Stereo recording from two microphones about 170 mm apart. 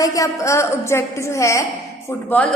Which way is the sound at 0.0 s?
20° left (ahead or behind).